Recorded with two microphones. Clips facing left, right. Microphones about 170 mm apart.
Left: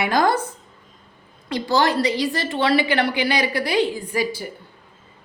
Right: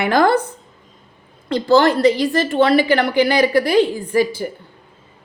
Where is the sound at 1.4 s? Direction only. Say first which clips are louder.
Right 6 dB; 55° right (ahead or behind).